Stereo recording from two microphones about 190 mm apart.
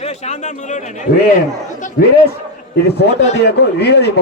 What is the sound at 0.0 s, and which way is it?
A man's voice, 35° left (ahead or behind).